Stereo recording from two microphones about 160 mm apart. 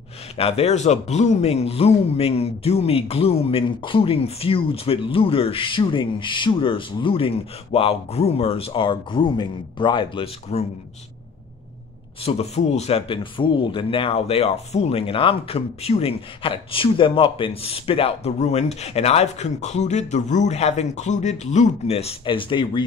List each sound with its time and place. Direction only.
0.4 s speech: 40° left (ahead or behind)
12.2 s speech: 40° left (ahead or behind)